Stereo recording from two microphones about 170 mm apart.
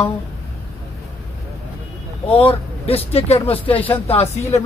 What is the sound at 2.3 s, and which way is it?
Speech, 35° left (ahead or behind).